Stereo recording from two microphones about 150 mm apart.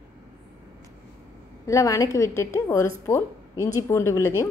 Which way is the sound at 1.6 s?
20° left (ahead or behind).